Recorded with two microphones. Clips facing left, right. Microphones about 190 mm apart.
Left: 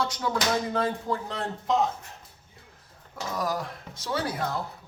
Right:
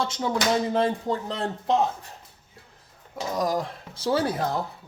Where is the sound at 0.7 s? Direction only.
25° right (ahead or behind).